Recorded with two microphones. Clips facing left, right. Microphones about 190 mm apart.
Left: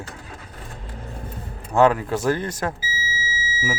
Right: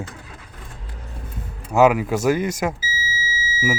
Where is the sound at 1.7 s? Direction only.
10° right (ahead or behind).